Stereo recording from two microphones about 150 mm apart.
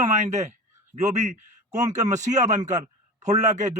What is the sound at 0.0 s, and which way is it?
A man's voice, 55° right (ahead or behind).